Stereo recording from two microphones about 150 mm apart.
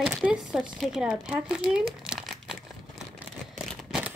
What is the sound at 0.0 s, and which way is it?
Speech, 5° right (ahead or behind).